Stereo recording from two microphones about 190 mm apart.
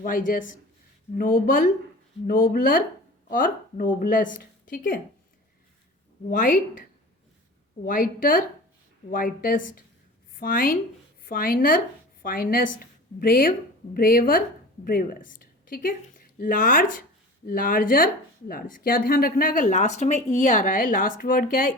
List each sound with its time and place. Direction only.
0.3 s speech: 45° left (ahead or behind)
6.3 s speech: 45° left (ahead or behind)
7.9 s a woman's voice: 45° left (ahead or behind)